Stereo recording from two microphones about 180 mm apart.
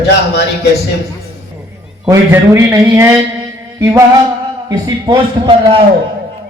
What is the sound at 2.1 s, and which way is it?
A man's voice, 15° right (ahead or behind).